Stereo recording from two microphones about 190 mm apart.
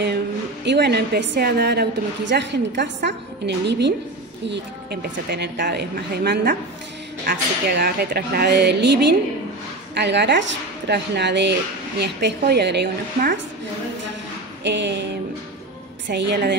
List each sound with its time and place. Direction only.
0.7 s a woman's voice: 60° right (ahead or behind)
5.3 s a woman's voice: 60° right (ahead or behind)
14.6 s a woman's voice: 65° right (ahead or behind)
16.1 s a woman's voice: 65° right (ahead or behind)